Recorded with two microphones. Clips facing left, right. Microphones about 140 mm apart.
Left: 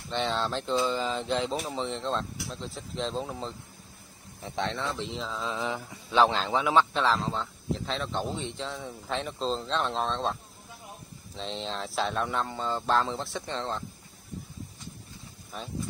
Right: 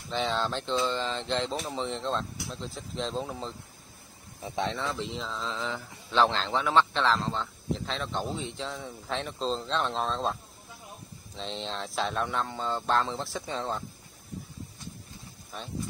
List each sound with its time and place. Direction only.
0.1 s speech: centre (ahead or behind)
11.3 s speech: centre (ahead or behind)
15.5 s speech: centre (ahead or behind)